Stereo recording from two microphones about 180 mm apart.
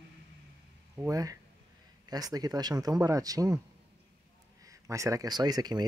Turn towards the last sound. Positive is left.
turn(degrees=-20)  # may be behind; listen again after turning